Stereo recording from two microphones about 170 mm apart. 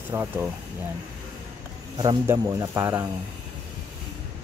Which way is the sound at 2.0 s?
25° right (ahead or behind).